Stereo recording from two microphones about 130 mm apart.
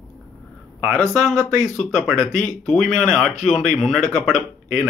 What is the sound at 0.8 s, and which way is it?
Speech, 5° left (ahead or behind).